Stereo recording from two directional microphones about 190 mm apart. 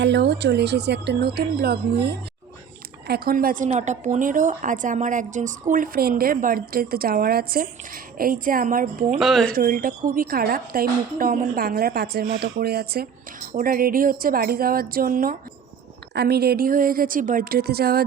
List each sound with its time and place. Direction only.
0.0 s a woman's voice: 65° right (ahead or behind); by 9.1 s 45° right (ahead or behind)
9.1 s speech: centre (ahead or behind)
9.5 s a woman's voice: 50° right (ahead or behind)